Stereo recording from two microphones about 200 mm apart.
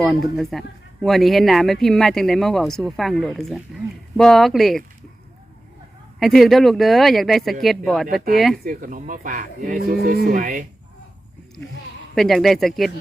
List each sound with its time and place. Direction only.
0.5 s speech: centre (ahead or behind)
6.1 s speech: centre (ahead or behind)
8.6 s livestock: 45° right (ahead or behind)
12.1 s speech: centre (ahead or behind)